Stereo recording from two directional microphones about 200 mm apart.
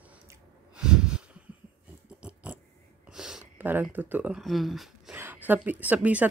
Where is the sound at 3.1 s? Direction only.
5° right (ahead or behind).